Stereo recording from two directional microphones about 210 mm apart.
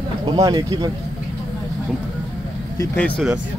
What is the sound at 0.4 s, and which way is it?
Speech, 15° right (ahead or behind).